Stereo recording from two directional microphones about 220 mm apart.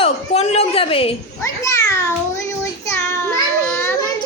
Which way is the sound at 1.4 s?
15° left (ahead or behind).